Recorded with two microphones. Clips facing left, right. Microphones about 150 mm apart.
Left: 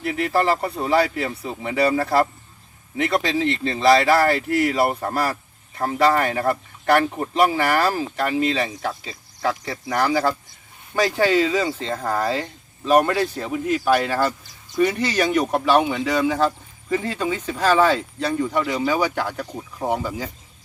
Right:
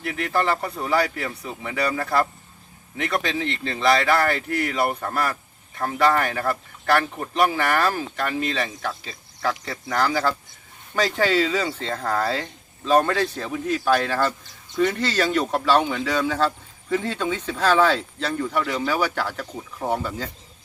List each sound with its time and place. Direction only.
0.0 s speech: 30° left (ahead or behind); by 20.3 s 10° left (ahead or behind)